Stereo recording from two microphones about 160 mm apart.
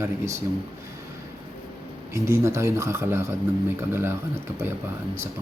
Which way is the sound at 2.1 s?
15° right (ahead or behind).